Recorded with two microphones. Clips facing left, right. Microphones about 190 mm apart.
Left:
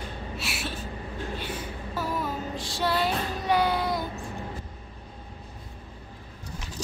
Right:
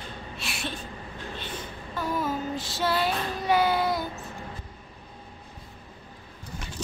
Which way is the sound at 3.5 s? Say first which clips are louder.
Right 1 dB; 5° right (ahead or behind).